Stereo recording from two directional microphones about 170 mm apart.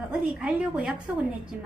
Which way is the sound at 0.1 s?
5° right (ahead or behind).